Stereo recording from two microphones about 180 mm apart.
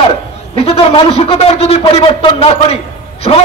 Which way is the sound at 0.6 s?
30° left (ahead or behind).